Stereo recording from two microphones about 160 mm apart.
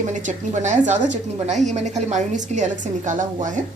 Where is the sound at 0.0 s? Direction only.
50° right (ahead or behind).